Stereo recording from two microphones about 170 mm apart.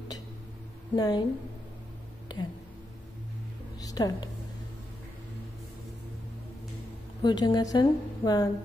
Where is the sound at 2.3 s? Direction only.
25° left (ahead or behind).